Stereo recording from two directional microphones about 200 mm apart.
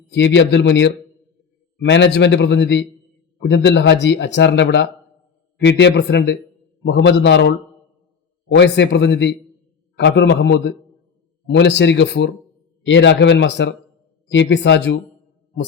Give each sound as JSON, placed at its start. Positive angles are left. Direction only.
{"t": 0.1, "sound": "speech", "side_deg": 60}
{"t": 8.5, "sound": "speech", "side_deg": 60}